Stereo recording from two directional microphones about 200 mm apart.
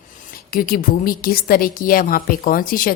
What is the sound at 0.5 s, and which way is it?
A woman's voice, 45° left (ahead or behind).